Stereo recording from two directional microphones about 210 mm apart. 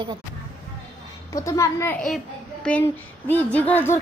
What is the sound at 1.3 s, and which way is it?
A woman's voice, 15° left (ahead or behind).